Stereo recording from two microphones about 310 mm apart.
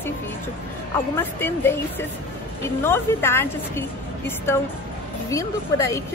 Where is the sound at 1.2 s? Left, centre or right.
Centre.